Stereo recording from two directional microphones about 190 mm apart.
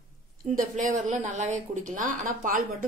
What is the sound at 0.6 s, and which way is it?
Speech, 40° right (ahead or behind).